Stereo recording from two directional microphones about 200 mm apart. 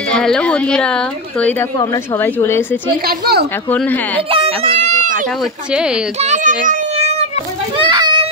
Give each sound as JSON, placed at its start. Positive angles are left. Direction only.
{"t": 0.1, "sound": "a woman's voice", "side_deg": 5}
{"t": 2.2, "sound": "a woman's voice", "side_deg": 10}
{"t": 3.1, "sound": "speech", "side_deg": -50}
{"t": 4.3, "sound": "speech", "side_deg": -30}
{"t": 6.2, "sound": "child singing", "side_deg": -40}
{"t": 7.8, "sound": "children playing", "side_deg": -25}